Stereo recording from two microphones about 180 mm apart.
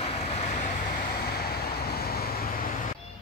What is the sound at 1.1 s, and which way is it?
Vehicle, 60° left (ahead or behind).